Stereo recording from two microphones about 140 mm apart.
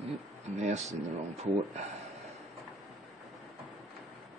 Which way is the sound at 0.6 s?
55° right (ahead or behind).